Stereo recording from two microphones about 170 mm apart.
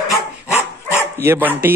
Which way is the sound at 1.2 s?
15° right (ahead or behind).